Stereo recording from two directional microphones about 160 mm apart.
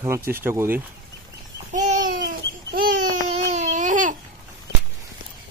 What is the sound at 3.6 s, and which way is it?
Babbling, 50° right (ahead or behind).